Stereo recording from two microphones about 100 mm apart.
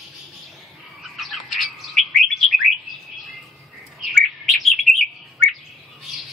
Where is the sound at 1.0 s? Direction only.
Centre (ahead or behind).